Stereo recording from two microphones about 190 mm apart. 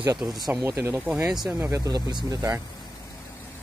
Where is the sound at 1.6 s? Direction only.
15° right (ahead or behind).